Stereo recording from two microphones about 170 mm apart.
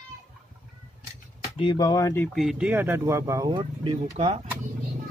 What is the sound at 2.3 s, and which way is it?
Speech, centre (ahead or behind).